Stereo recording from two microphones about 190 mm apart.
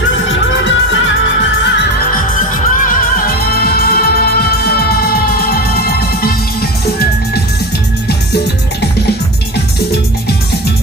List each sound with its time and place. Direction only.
0.3 s music: 75° left (ahead or behind)
2.9 s music: 50° left (ahead or behind)